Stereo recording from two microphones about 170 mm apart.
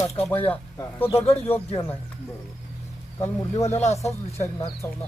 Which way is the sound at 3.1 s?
15° left (ahead or behind).